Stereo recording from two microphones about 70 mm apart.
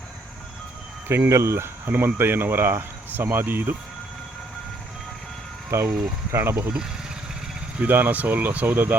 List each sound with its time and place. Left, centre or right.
1.0 s speech: right
5.7 s speech: right
7.8 s speech: right